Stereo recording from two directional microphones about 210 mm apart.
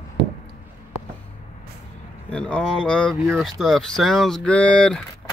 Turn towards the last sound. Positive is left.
turn(degrees=5)  # may be behind; listen again after turning